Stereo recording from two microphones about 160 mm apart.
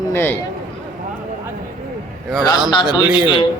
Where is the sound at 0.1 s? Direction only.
15° left (ahead or behind).